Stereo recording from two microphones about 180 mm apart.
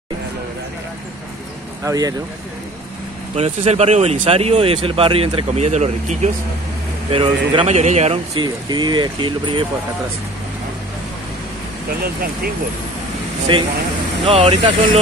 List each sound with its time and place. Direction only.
1.9 s speech: 20° right (ahead or behind)
3.3 s speech: 35° right (ahead or behind)
7.1 s speech: 30° right (ahead or behind)
13.5 s speech: 30° right (ahead or behind)